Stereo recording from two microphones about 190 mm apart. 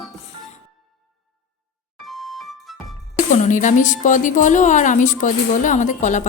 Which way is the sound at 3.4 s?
40° left (ahead or behind).